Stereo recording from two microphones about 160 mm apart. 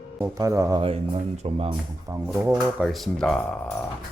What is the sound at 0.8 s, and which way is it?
Speech, 35° right (ahead or behind).